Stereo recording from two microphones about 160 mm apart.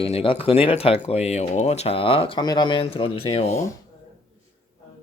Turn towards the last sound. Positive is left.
turn(degrees=40)  # may be behind; listen again after turning